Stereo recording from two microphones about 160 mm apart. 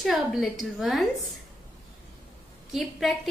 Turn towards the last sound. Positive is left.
turn(degrees=0)  # may be behind; listen again after turning